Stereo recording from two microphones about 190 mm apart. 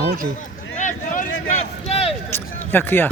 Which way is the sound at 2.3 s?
10° left (ahead or behind).